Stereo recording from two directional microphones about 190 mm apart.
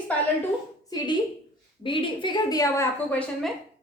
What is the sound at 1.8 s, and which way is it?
A woman's voice, 25° left (ahead or behind).